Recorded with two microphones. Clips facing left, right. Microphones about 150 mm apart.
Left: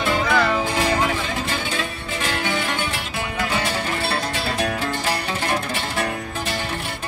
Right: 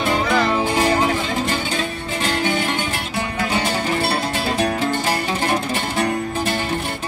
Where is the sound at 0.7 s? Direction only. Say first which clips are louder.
Right 5 dB; 35° right (ahead or behind).